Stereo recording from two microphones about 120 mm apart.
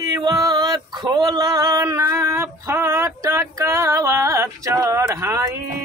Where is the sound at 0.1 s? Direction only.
30° right (ahead or behind).